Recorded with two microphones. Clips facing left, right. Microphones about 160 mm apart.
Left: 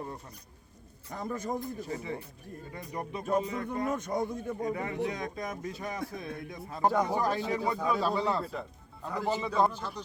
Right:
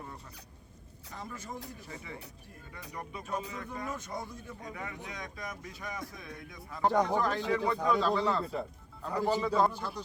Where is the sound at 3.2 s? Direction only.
50° left (ahead or behind).